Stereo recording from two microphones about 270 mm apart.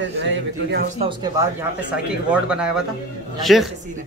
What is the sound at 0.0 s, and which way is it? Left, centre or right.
Speech, right.